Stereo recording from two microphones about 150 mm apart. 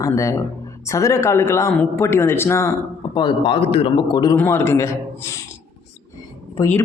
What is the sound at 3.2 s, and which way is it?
A man's voice, 30° left (ahead or behind).